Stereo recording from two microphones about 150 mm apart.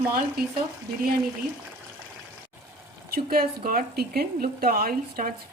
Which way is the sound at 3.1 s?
80° right.